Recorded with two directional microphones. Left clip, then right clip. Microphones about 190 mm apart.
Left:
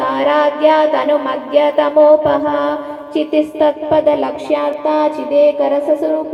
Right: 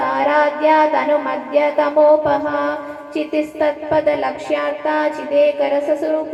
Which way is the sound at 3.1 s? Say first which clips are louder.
Left 5 dB; 60° left (ahead or behind).